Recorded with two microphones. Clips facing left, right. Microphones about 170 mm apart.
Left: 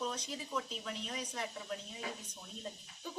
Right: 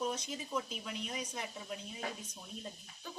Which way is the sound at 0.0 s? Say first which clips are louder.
Right 2 dB; 10° right (ahead or behind).